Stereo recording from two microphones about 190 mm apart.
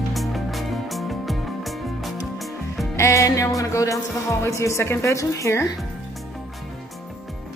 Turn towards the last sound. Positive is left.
turn(degrees=15)  # may be behind; listen again after turning